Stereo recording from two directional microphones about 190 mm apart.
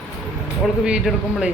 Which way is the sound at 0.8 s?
5° right (ahead or behind).